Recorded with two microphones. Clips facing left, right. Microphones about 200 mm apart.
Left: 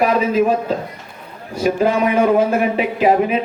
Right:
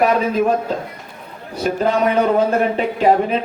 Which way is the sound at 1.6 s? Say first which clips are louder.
Left 1 dB; 10° left (ahead or behind).